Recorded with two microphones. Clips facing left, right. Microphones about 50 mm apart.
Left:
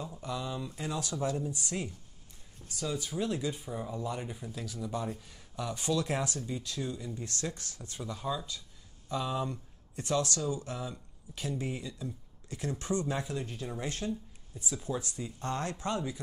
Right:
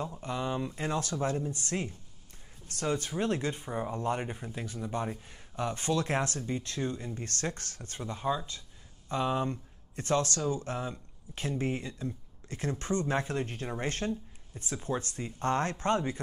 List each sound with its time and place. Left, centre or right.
0.2 s speech: right
2.7 s speech: right
8.0 s speech: right